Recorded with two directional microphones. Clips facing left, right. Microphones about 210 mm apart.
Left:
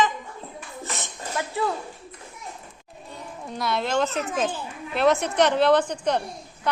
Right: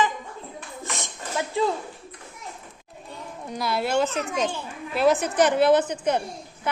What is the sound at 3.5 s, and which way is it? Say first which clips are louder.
Speech: right 1 dB; centre (ahead or behind).